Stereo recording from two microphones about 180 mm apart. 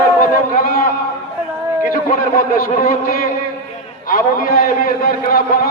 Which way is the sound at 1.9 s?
45° left (ahead or behind).